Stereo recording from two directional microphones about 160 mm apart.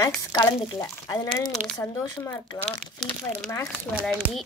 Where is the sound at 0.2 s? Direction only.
20° left (ahead or behind).